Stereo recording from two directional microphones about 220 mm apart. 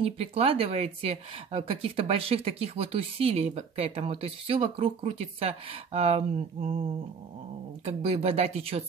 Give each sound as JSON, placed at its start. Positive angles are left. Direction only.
{"t": 0.0, "sound": "speech", "side_deg": -25}
{"t": 7.8, "sound": "speech", "side_deg": -25}